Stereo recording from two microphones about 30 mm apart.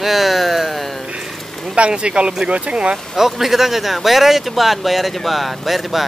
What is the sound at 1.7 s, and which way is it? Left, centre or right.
Speech, right.